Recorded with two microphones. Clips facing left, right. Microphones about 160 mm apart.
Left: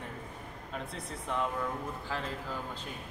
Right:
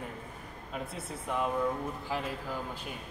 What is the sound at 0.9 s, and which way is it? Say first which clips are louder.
A man's voice: right 1 dB; 10° right (ahead or behind).